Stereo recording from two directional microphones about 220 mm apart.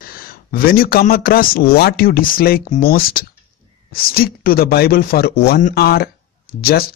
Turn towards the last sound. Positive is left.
turn(degrees=45)  # may be behind; listen again after turning